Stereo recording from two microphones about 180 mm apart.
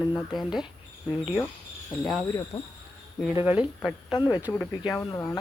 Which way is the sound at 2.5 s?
25° left (ahead or behind).